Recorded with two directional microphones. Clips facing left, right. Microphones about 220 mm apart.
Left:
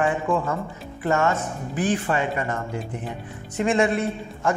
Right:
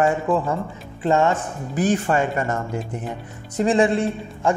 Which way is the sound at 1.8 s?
45° right (ahead or behind).